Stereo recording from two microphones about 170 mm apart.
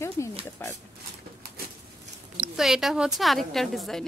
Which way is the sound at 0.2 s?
15° left (ahead or behind).